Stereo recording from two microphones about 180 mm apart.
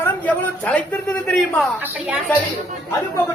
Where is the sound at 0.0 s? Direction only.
10° left (ahead or behind).